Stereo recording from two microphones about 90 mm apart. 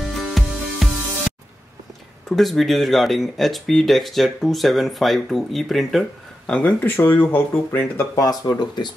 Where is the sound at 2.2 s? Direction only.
5° left (ahead or behind).